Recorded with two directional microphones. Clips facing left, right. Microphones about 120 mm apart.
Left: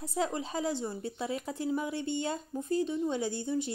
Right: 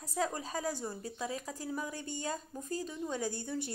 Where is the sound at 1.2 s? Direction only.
30° left (ahead or behind).